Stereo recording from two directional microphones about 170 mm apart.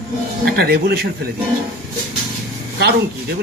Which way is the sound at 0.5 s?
70° right (ahead or behind).